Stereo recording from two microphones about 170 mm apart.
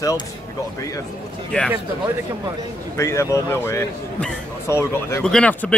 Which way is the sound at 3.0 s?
15° left (ahead or behind).